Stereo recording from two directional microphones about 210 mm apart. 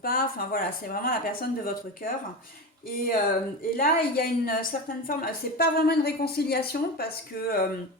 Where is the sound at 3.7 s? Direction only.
45° left (ahead or behind).